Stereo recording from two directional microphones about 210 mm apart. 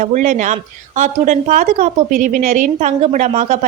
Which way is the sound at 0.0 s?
35° right (ahead or behind).